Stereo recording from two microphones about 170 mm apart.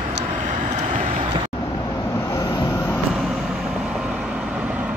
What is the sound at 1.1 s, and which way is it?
Vehicle, 35° right (ahead or behind).